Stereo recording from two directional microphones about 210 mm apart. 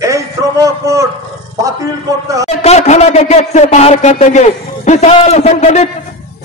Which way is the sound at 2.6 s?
30° left (ahead or behind).